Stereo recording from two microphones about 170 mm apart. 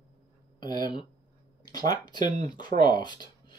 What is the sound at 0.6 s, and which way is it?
Speech, 25° left (ahead or behind).